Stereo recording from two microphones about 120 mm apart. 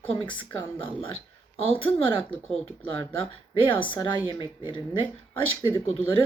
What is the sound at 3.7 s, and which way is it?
Speech, 45° left (ahead or behind).